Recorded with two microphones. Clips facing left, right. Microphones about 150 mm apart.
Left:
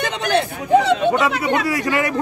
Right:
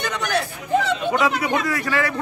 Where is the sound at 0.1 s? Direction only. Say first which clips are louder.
Left 5 dB; 25° left (ahead or behind).